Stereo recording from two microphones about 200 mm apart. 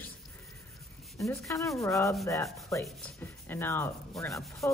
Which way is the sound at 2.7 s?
15° left (ahead or behind).